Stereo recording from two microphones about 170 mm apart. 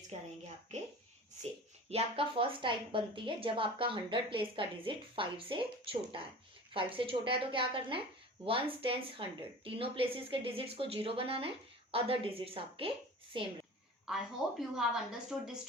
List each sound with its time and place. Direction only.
0.1 s a woman's voice: 40° right (ahead or behind)
1.9 s a woman's voice: 35° right (ahead or behind)
14.1 s a woman's voice: centre (ahead or behind)